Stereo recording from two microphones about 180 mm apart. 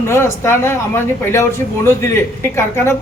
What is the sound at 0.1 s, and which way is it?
Speech, 15° left (ahead or behind).